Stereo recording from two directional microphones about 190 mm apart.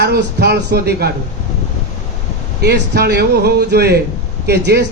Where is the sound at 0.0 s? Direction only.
60° right (ahead or behind).